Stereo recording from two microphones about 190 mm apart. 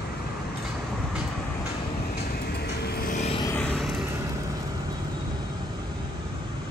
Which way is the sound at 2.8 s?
50° left (ahead or behind).